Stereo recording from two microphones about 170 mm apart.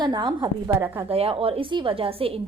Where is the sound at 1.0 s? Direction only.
35° right (ahead or behind).